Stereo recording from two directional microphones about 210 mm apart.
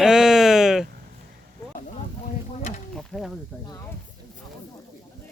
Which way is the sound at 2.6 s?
35° left (ahead or behind).